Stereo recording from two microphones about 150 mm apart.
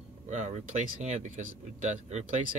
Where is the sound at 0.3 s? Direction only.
50° right (ahead or behind).